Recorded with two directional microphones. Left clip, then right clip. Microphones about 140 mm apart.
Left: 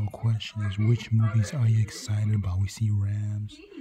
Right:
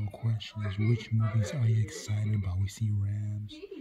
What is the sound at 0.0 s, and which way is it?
Speech, 35° left (ahead or behind).